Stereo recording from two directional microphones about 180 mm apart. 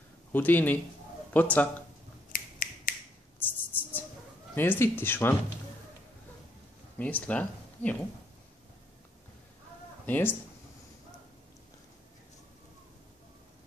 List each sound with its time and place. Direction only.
0.3 s speech: 10° left (ahead or behind)
2.3 s finger snapping: 50° left (ahead or behind)
3.3 s a sound: 10° left (ahead or behind)
4.6 s speech: 10° left (ahead or behind)
7.0 s speech: 10° left (ahead or behind)
10.0 s speech: 10° left (ahead or behind)